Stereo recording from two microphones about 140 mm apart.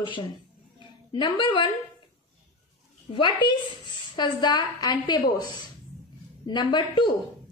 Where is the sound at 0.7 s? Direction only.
35° left (ahead or behind).